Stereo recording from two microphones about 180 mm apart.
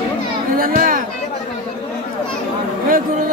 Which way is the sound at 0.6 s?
50° right (ahead or behind).